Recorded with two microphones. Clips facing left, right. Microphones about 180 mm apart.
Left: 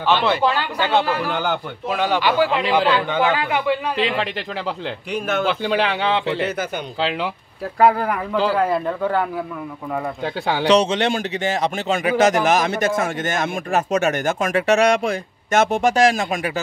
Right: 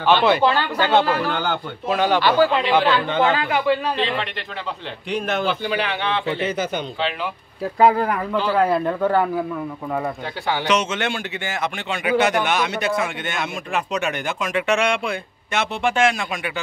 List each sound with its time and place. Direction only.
0.0 s a man's voice: centre (ahead or behind); by 3.7 s 15° left (ahead or behind)
7.8 s a man's voice: 5° left (ahead or behind)
10.6 s speech: 35° left (ahead or behind)